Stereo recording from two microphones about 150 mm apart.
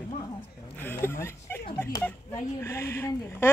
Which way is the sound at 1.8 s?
15° left (ahead or behind).